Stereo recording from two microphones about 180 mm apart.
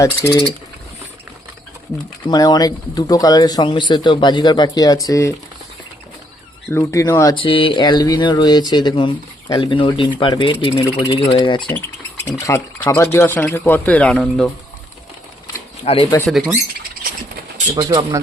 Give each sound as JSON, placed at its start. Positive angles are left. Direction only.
{"t": 0.0, "sound": "speech", "side_deg": 15}
{"t": 2.2, "sound": "speech", "side_deg": 20}
{"t": 6.7, "sound": "speech", "side_deg": 15}
{"t": 7.3, "sound": "speech", "side_deg": 30}
{"t": 12.2, "sound": "speech", "side_deg": 15}
{"t": 15.8, "sound": "speech", "side_deg": 35}
{"t": 17.7, "sound": "speech", "side_deg": -20}